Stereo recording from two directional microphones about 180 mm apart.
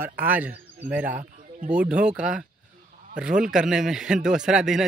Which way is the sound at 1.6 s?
5° right (ahead or behind).